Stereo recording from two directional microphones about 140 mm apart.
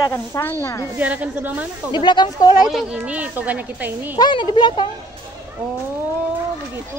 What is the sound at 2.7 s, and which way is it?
Speech, centre (ahead or behind).